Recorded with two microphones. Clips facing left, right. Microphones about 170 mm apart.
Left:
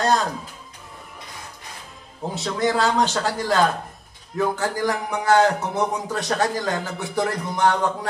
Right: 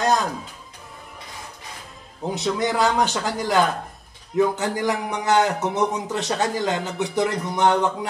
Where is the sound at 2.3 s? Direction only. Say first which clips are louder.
Even; 15° right (ahead or behind).